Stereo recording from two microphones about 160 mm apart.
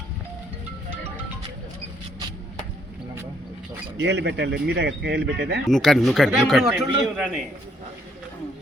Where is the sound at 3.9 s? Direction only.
90° right.